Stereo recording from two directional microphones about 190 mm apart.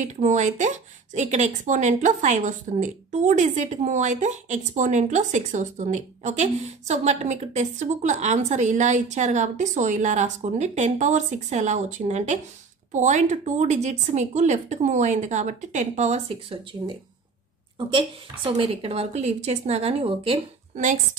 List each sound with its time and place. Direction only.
0.0 s speech: 40° right (ahead or behind)